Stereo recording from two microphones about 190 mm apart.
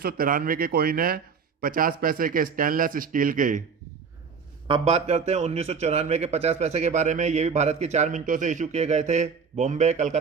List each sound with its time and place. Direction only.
0.0 s a man's voice: 50° right (ahead or behind)
4.7 s a man's voice: 35° right (ahead or behind)